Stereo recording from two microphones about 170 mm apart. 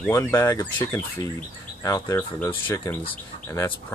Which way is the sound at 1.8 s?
15° left (ahead or behind).